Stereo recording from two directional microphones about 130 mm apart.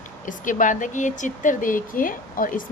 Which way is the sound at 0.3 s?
90° left.